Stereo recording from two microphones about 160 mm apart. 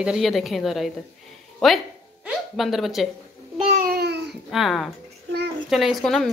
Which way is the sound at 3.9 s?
90° right.